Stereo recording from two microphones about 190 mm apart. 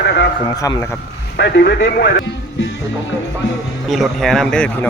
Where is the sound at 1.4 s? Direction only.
65° left (ahead or behind).